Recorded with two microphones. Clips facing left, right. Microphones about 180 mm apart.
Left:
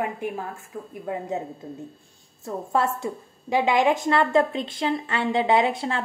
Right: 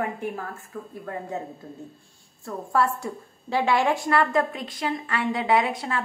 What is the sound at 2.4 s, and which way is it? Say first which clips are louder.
A woman's voice: even; 20° left (ahead or behind).